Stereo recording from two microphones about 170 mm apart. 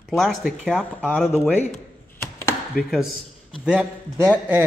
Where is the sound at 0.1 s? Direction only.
Centre (ahead or behind).